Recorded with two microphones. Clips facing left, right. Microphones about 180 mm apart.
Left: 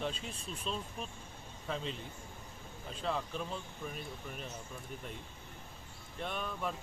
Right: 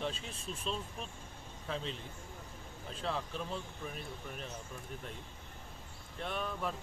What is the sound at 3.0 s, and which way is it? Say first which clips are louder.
Speech: left 1 dB; centre (ahead or behind).